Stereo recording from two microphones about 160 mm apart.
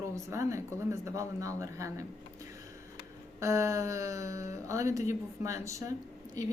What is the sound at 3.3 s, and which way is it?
Speech, 20° right (ahead or behind).